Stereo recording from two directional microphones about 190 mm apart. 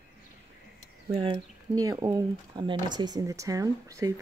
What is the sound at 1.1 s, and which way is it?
Speech, 30° right (ahead or behind).